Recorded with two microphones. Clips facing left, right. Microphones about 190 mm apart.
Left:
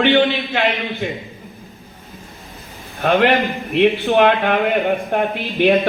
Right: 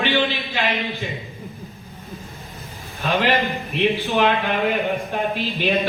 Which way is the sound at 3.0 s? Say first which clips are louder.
Left 5 dB; 55° left (ahead or behind).